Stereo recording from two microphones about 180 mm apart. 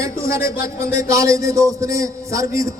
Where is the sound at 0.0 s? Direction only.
15° right (ahead or behind).